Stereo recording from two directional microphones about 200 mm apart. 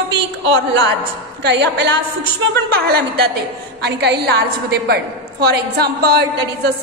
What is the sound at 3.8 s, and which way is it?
A woman's voice, 55° right (ahead or behind).